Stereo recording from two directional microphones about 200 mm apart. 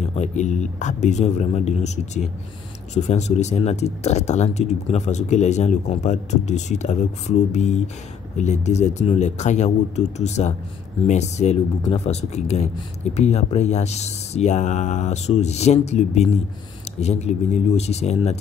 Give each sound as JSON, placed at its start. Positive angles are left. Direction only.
{"t": 0.1, "sound": "speech", "side_deg": 35}